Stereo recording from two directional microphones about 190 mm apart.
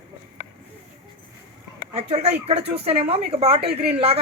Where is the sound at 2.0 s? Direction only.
35° right (ahead or behind).